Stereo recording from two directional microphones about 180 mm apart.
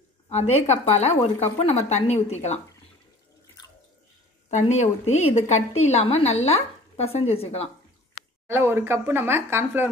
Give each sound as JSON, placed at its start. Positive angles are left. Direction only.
{"t": 0.3, "sound": "a woman's voice", "side_deg": 35}
{"t": 4.5, "sound": "a woman's voice", "side_deg": 40}
{"t": 8.5, "sound": "a woman's voice", "side_deg": -15}